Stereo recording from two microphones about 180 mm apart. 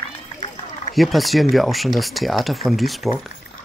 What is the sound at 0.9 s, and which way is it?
Speech, centre (ahead or behind).